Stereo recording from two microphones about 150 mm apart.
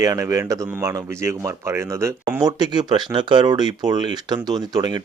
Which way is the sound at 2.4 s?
30° right (ahead or behind).